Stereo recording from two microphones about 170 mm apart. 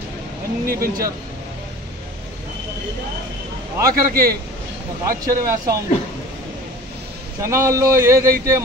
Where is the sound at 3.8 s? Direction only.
60° right (ahead or behind).